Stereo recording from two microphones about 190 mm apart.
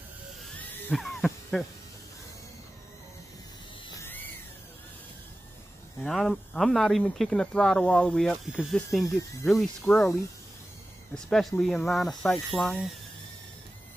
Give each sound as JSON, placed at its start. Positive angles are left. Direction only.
{"t": 0.8, "sound": "a sound", "side_deg": 0}
{"t": 6.0, "sound": "speech", "side_deg": 0}
{"t": 11.2, "sound": "speech", "side_deg": 5}